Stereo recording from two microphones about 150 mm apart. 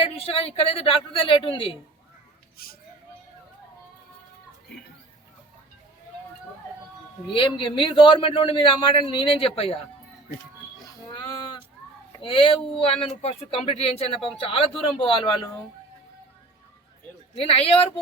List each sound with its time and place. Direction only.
0.0 s speech: 40° left (ahead or behind)
7.3 s speech: 35° left (ahead or behind)
12.2 s speech: 35° left (ahead or behind)
17.3 s speech: 40° left (ahead or behind)